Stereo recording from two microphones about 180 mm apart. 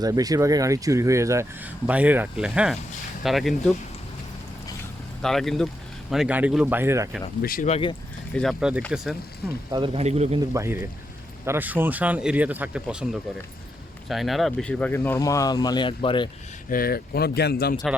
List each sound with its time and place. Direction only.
0.0 s speech: 20° right (ahead or behind); by 3.8 s centre (ahead or behind)
5.2 s speech: centre (ahead or behind); by 7.1 s 15° right (ahead or behind)
7.4 s speech: 50° left (ahead or behind)
7.7 s speech: 30° left (ahead or behind)
8.4 s speech: centre (ahead or behind)
9.7 s speech: 30° right (ahead or behind)
10.5 s speech: 15° right (ahead or behind); by 16.3 s 30° left (ahead or behind)
16.6 s speech: 55° left (ahead or behind)